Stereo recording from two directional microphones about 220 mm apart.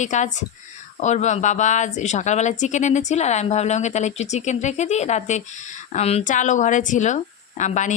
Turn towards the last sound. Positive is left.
turn(degrees=35)  # may be behind; listen again after turning